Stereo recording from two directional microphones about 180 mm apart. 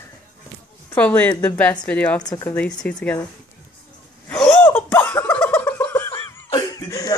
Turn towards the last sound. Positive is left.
turn(degrees=20)  # may be behind; listen again after turning